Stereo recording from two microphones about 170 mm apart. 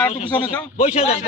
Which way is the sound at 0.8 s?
40° left (ahead or behind).